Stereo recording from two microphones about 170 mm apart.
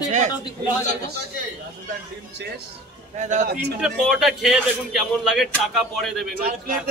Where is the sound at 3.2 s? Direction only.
45° right (ahead or behind).